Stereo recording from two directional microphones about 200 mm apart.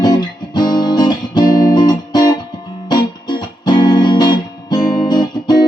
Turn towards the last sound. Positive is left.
turn(degrees=20)  # may be behind; listen again after turning